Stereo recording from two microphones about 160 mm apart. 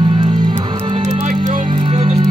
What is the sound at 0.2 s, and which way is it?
Music, 30° right (ahead or behind).